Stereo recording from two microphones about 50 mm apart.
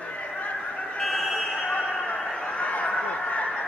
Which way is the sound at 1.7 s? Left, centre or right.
Left.